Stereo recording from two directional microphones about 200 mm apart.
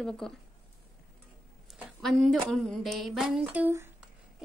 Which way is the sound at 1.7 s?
Centre (ahead or behind).